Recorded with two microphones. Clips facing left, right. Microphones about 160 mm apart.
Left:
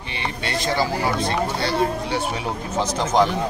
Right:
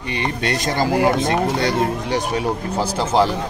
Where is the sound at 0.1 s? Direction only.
50° right (ahead or behind).